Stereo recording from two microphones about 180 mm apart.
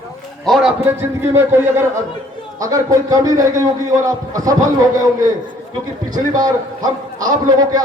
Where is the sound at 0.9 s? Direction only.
15° right (ahead or behind).